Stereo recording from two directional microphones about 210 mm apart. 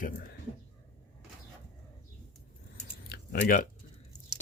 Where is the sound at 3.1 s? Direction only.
45° left (ahead or behind).